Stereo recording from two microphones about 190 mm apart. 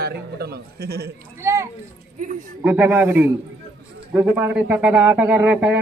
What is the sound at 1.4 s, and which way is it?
Speech, 15° right (ahead or behind).